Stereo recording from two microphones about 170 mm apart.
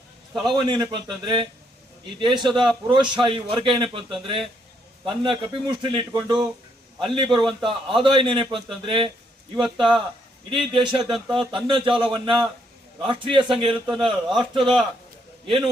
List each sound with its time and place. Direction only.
0.5 s a man's voice: 25° right (ahead or behind)